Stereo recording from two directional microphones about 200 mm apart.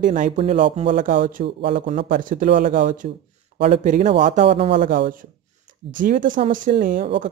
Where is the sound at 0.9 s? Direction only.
40° right (ahead or behind).